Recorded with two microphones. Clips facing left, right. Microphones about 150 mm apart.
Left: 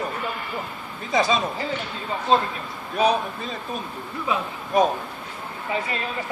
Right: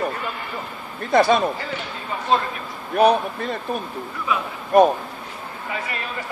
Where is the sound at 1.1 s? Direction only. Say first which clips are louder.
Right 5 dB; 60° right (ahead or behind).